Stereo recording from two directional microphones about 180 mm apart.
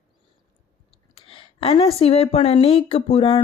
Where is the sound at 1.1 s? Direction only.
30° left (ahead or behind).